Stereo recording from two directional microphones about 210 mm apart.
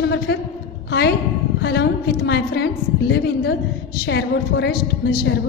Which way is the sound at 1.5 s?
55° left (ahead or behind).